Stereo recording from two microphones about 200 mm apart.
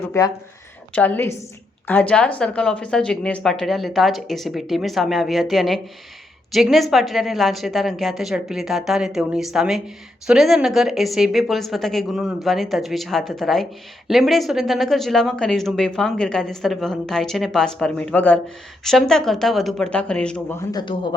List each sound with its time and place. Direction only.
0.1 s a woman's voice: 15° left (ahead or behind)